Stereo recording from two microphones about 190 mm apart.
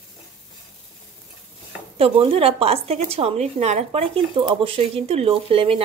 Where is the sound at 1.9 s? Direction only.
30° right (ahead or behind).